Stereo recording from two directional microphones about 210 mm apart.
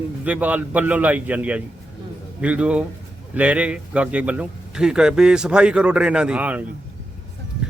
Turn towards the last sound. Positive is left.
turn(degrees=-5)  # may be behind; listen again after turning